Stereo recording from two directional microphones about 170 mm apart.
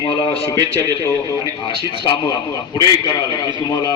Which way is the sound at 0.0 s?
30° left (ahead or behind).